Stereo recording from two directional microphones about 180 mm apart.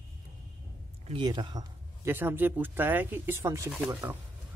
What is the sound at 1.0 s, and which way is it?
Speech, 25° right (ahead or behind).